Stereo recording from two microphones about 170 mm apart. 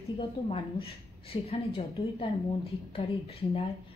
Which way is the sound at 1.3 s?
35° left (ahead or behind).